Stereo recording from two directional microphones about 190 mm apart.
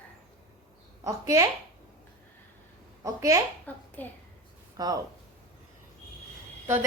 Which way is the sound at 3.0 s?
15° right (ahead or behind).